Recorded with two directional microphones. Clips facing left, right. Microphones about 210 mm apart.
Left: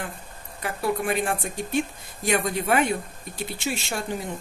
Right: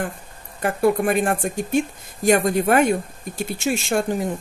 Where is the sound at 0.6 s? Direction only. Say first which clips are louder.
Right 8 dB; 50° right (ahead or behind).